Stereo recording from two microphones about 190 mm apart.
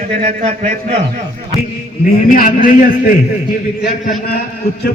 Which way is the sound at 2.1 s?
45° left (ahead or behind).